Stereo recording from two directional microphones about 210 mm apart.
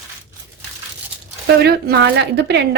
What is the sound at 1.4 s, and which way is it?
Speech, 50° right (ahead or behind).